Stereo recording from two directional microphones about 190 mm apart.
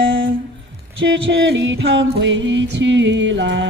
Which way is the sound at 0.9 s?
80° right.